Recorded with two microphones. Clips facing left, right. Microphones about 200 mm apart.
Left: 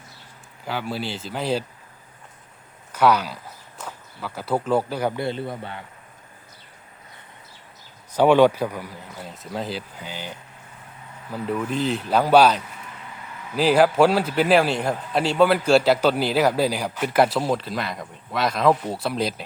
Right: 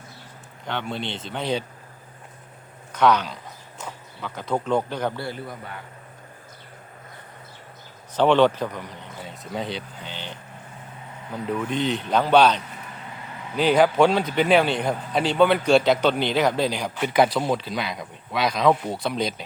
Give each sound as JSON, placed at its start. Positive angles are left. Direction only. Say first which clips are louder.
{"t": 0.6, "sound": "a man's voice", "louder": "left 1 dB", "side_deg": 5}
{"t": 2.9, "sound": "speech", "louder": "left 1 dB", "side_deg": 10}
{"t": 5.2, "sound": "a man's voice", "louder": "left 5 dB", "side_deg": 25}
{"t": 8.1, "sound": "a man's voice", "louder": "left 2 dB", "side_deg": 10}